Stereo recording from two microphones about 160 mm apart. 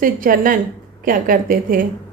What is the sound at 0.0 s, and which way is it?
A woman's voice, 60° right (ahead or behind).